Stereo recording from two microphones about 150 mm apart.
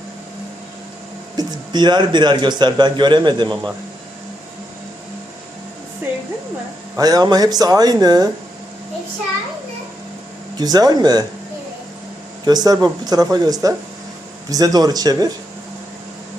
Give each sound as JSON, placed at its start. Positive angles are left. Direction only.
{"t": 1.4, "sound": "a man's voice", "side_deg": -30}
{"t": 6.9, "sound": "a man's voice", "side_deg": -25}
{"t": 10.6, "sound": "a man's voice", "side_deg": -25}
{"t": 12.5, "sound": "a man's voice", "side_deg": -25}